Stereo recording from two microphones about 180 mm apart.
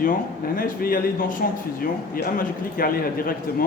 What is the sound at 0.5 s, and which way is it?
Speech, 50° left (ahead or behind).